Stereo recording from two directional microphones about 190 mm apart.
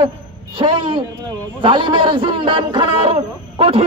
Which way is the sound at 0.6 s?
25° right (ahead or behind).